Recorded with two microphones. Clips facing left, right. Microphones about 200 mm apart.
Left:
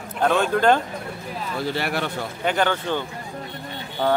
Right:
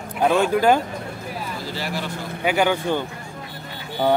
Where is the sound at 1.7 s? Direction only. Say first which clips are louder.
Left 3 dB; 65° left (ahead or behind).